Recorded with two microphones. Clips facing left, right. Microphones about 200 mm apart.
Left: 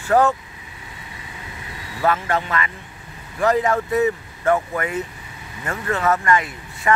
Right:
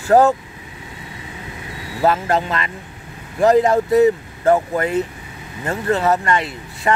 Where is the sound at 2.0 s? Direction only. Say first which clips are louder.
Right 4 dB; 30° right (ahead or behind).